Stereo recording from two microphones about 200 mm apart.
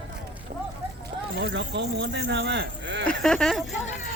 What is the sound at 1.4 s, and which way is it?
Speech, 60° right (ahead or behind).